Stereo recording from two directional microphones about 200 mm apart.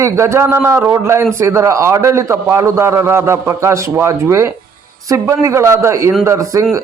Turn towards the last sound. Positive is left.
turn(degrees=-15)  # may be behind; listen again after turning